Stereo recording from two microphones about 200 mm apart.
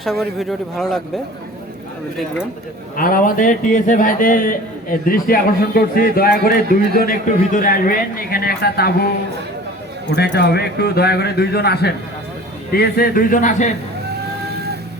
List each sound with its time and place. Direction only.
0.0 s speech: centre (ahead or behind)
2.9 s a man's voice: 45° left (ahead or behind)
10.1 s a man's voice: 60° left (ahead or behind); by 13.7 s 35° left (ahead or behind)